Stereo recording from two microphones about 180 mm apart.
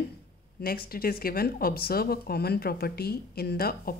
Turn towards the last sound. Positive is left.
turn(degrees=55)  # may be behind; listen again after turning